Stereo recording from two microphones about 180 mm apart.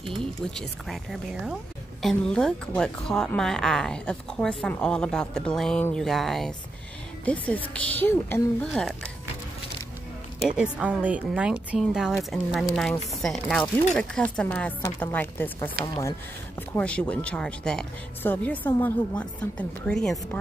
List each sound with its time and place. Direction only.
0.0 s speech: centre (ahead or behind)
10.6 s speech: 5° right (ahead or behind)